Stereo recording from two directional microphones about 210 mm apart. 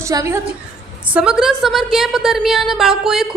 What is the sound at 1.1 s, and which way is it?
A woman's voice, 5° right (ahead or behind).